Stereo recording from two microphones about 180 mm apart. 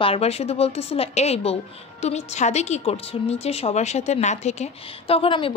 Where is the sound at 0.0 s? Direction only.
35° left (ahead or behind).